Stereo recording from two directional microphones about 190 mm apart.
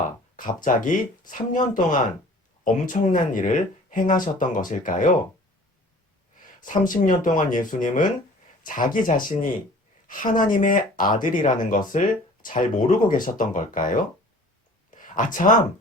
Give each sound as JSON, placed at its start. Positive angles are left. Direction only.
{"t": 0.6, "sound": "speech", "side_deg": 45}
{"t": 6.6, "sound": "speech", "side_deg": 45}
{"t": 14.8, "sound": "a sound", "side_deg": 45}